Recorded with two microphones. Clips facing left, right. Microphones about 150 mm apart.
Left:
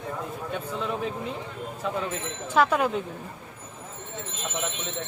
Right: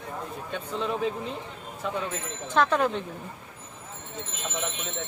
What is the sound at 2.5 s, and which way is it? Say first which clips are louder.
Speech: left 1 dB; 10° left (ahead or behind).